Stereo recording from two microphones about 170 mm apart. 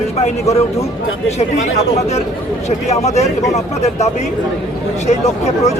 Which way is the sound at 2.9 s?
40° left (ahead or behind).